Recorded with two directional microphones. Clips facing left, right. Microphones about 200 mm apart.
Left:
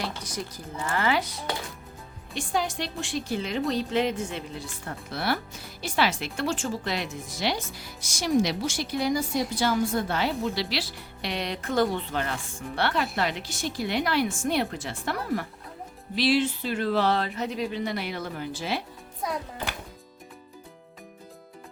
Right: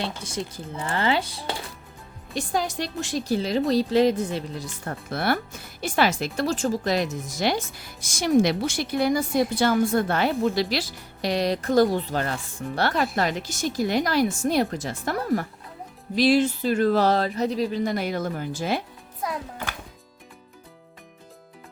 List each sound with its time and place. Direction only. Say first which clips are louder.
0.0 s a woman's voice: right 3 dB; 25° right (ahead or behind); by 18.8 s 45° right (ahead or behind)